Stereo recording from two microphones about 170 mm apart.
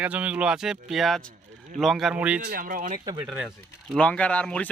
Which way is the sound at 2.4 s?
60° right (ahead or behind).